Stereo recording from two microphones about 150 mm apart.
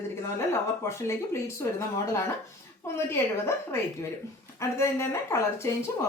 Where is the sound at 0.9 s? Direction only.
20° left (ahead or behind).